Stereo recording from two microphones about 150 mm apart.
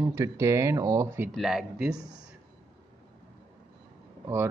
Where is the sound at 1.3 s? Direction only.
5° right (ahead or behind).